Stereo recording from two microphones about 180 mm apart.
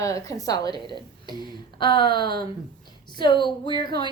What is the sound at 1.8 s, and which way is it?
A woman's voice, 25° left (ahead or behind).